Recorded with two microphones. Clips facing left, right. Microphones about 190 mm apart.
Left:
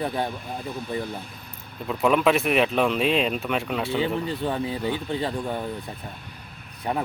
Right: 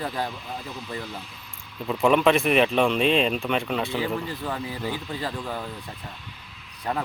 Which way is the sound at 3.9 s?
25° left (ahead or behind).